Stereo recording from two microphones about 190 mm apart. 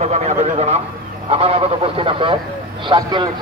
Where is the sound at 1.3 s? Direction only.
30° right (ahead or behind).